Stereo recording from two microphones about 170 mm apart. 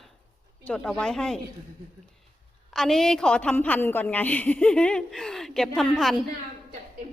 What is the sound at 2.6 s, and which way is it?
A woman's voice, centre (ahead or behind).